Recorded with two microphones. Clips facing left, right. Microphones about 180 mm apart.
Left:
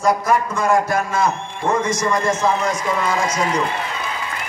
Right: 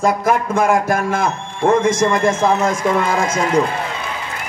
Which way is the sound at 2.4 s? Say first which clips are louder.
Right 4 dB; 55° right (ahead or behind).